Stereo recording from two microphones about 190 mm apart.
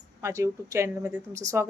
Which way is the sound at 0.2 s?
15° right (ahead or behind).